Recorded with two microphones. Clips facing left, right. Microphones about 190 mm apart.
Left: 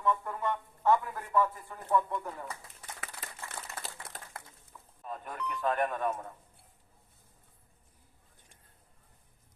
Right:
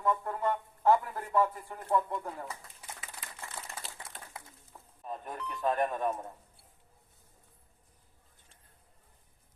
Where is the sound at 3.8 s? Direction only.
60° left (ahead or behind).